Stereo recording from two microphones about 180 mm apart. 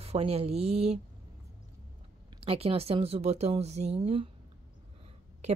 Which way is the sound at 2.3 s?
30° right (ahead or behind).